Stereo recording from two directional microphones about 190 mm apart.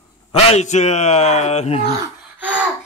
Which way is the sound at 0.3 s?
30° left (ahead or behind).